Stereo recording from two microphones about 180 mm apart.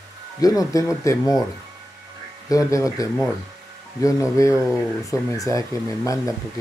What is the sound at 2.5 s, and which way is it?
Speech, 20° left (ahead or behind).